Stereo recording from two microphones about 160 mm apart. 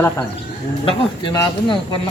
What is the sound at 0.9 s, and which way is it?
Speech, 25° left (ahead or behind).